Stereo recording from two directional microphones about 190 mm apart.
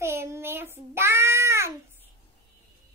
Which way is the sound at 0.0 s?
15° right (ahead or behind).